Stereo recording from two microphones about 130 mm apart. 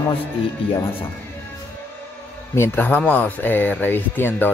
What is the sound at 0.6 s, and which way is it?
Speech, 45° left (ahead or behind).